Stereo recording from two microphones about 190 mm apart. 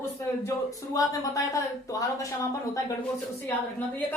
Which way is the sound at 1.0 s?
20° left (ahead or behind).